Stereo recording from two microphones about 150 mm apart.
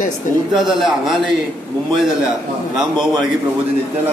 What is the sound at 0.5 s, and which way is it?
Speech, 5° right (ahead or behind).